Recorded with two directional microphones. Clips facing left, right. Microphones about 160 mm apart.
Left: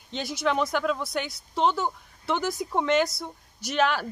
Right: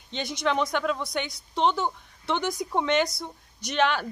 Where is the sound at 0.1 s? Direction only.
5° left (ahead or behind).